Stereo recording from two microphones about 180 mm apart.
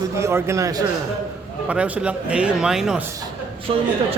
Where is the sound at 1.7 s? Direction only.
5° right (ahead or behind).